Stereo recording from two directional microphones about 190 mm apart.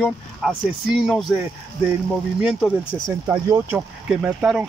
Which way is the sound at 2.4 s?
Centre (ahead or behind).